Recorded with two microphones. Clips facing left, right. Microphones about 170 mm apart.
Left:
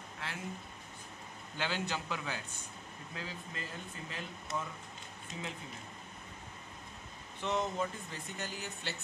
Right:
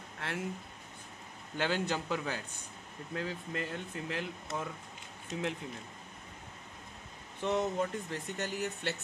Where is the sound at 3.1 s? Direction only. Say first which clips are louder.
Right 8 dB; 60° right (ahead or behind).